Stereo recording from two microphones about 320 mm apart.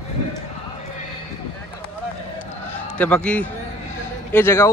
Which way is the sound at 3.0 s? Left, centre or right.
Centre.